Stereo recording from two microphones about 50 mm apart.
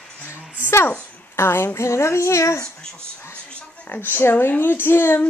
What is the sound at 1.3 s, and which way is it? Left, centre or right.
Speech, left.